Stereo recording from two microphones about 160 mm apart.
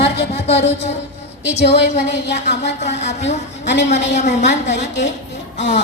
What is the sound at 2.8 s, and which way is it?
A woman's voice, 45° left (ahead or behind).